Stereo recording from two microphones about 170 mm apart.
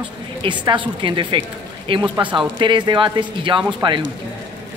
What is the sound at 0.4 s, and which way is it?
Speech, 30° right (ahead or behind).